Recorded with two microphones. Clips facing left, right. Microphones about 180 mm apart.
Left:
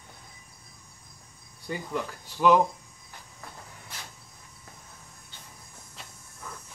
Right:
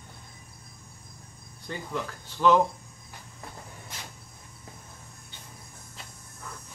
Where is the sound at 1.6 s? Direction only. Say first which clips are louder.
Left 2 dB; 10° left (ahead or behind).